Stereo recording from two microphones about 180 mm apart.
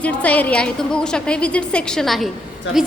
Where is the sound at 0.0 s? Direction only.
10° left (ahead or behind).